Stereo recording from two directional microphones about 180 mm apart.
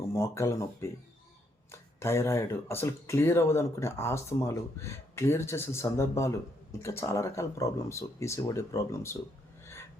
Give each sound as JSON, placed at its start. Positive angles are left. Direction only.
{"t": 0.1, "sound": "speech", "side_deg": 15}